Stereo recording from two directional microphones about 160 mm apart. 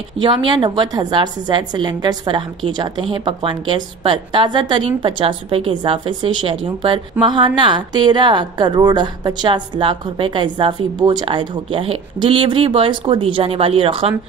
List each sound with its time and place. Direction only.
0.2 s a woman's voice: 30° right (ahead or behind)